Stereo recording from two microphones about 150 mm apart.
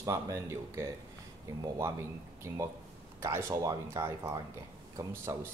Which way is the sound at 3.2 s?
20° right (ahead or behind).